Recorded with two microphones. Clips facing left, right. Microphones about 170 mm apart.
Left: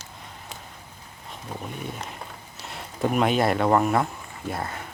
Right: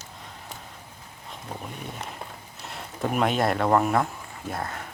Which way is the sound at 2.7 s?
Centre (ahead or behind).